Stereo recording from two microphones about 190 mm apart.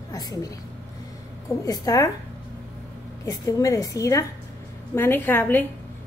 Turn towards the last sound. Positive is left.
turn(degrees=10)  # may be behind; listen again after turning